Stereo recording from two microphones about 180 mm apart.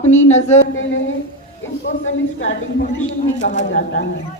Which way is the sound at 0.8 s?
90° left.